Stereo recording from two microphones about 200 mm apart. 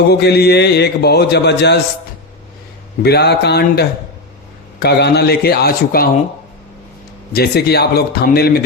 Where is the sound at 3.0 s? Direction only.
55° left (ahead or behind).